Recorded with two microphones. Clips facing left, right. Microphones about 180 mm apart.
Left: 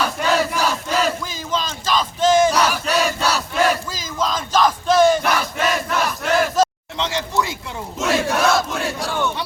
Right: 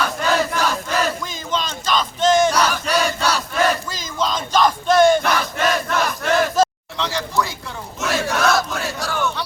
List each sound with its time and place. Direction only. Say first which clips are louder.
0.5 s battle cry: even; 5° left (ahead or behind)
6.9 s a sound: even; 20° left (ahead or behind)
7.9 s battle cry: left 2 dB; 25° left (ahead or behind)